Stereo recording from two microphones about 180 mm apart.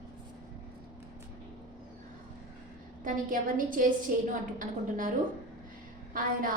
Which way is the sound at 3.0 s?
50° right (ahead or behind).